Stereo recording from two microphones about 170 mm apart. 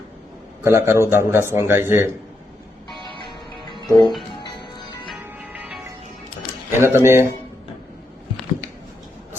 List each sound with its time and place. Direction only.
0.6 s a man's voice: 15° right (ahead or behind)
3.2 s music: 25° left (ahead or behind)
5.4 s music: 10° right (ahead or behind)
6.7 s a man's voice: 15° right (ahead or behind)